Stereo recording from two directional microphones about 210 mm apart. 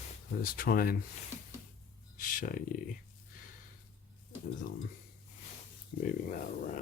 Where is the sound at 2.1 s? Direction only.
40° left (ahead or behind).